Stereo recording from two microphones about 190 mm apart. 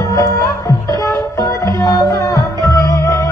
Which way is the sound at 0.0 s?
15° left (ahead or behind).